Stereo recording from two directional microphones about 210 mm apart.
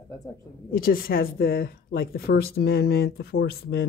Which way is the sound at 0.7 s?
45° left (ahead or behind).